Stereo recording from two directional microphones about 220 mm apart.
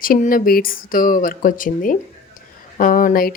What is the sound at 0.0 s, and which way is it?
Speech, 40° left (ahead or behind).